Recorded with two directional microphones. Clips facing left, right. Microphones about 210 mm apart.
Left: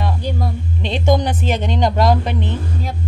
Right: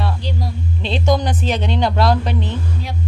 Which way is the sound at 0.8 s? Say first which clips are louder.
Left 1 dB; 15° left (ahead or behind).